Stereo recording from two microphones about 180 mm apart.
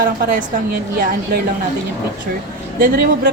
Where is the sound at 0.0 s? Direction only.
55° right (ahead or behind).